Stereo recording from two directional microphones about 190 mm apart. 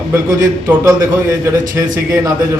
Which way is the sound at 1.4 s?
15° right (ahead or behind).